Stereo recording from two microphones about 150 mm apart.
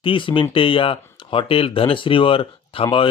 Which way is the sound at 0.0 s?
35° left (ahead or behind).